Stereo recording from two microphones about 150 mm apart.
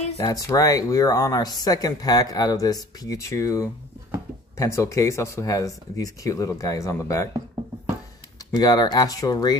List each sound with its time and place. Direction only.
0.2 s speech: 25° left (ahead or behind)
8.5 s speech: 25° left (ahead or behind)